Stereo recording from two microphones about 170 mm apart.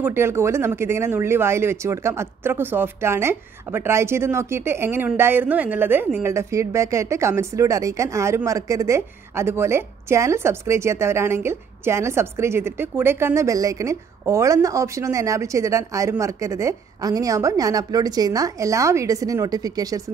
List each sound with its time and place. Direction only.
0.0 s speech: 15° right (ahead or behind)